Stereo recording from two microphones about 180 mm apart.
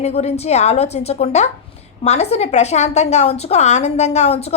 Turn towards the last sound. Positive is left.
turn(degrees=35)  # may be behind; listen again after turning